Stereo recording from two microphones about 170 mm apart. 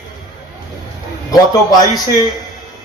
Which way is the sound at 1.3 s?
20° left (ahead or behind).